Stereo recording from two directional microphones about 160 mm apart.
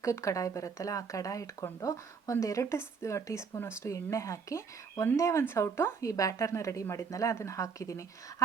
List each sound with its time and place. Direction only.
0.0 s speech: 20° left (ahead or behind)